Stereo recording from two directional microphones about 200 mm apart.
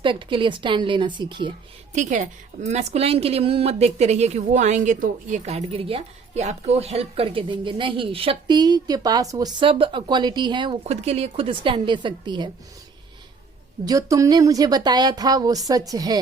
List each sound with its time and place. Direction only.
0.0 s a woman's voice: 25° right (ahead or behind)
2.0 s a woman's voice: 35° right (ahead or behind)
13.8 s a woman's voice: 15° right (ahead or behind)